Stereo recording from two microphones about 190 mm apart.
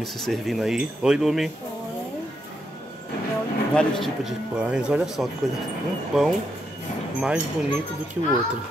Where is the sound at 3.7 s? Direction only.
5° left (ahead or behind).